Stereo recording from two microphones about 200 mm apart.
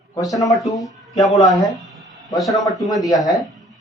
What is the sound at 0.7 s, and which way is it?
Speech, 15° left (ahead or behind).